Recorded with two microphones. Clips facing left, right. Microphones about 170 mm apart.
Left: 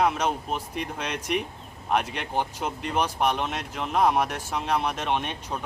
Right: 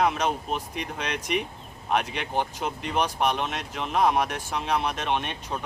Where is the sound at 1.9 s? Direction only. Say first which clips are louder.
Even; 10° left (ahead or behind).